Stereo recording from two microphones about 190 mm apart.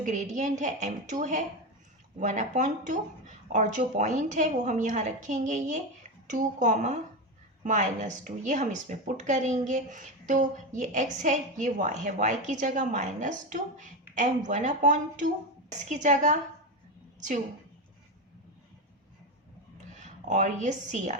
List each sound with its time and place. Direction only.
0.0 s a woman's voice: 40° right (ahead or behind)
19.9 s speech: 40° right (ahead or behind)